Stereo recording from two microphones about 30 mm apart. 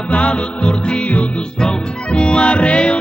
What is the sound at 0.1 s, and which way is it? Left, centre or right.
Music, left.